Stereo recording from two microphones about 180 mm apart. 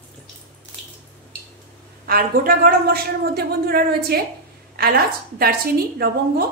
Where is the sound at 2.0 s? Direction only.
55° right (ahead or behind).